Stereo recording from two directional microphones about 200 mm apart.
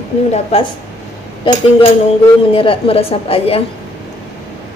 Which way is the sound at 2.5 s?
25° left (ahead or behind).